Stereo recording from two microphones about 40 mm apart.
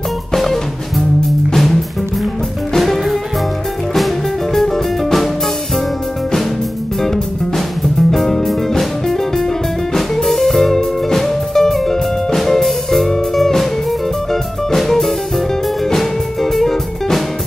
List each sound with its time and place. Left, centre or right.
0.3 s music: centre
4.6 s music: centre
7.0 s music: centre
14.8 s music: centre